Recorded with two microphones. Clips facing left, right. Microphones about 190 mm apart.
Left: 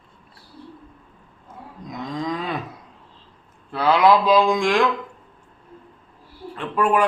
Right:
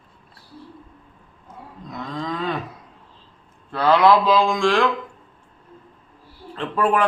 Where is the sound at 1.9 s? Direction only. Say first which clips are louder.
Left 2 dB; 15° left (ahead or behind).